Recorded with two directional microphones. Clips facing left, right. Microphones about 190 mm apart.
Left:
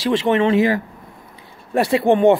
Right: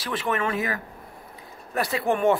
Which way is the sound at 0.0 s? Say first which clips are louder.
Left 10 dB; 25° left (ahead or behind).